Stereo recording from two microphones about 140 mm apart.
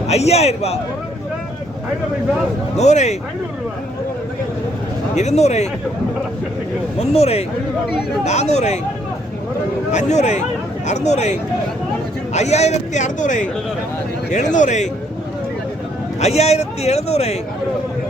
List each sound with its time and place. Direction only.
0.1 s a man's voice: 50° left (ahead or behind)
2.7 s a man's voice: 55° left (ahead or behind)
5.1 s a man's voice: 55° left (ahead or behind)
7.0 s a man's voice: 45° left (ahead or behind)
9.9 s a man's voice: 55° left (ahead or behind)
16.2 s a man's voice: 50° left (ahead or behind)